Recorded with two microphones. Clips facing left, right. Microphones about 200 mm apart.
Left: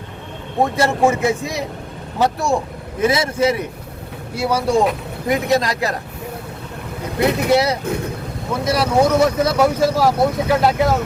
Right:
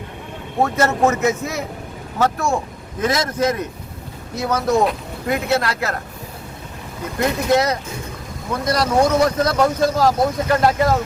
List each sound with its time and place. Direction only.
0.6 s speech: 10° left (ahead or behind)
7.4 s speech: 10° left (ahead or behind)